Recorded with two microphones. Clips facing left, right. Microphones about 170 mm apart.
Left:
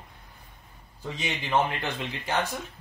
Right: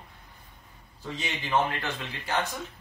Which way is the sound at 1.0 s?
15° left (ahead or behind).